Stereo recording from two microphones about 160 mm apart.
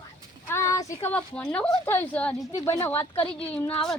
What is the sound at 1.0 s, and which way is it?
A woman's voice, 10° left (ahead or behind).